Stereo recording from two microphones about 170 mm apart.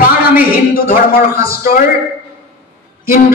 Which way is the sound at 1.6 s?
55° left (ahead or behind).